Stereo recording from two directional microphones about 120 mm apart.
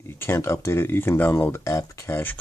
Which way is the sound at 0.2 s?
20° left (ahead or behind).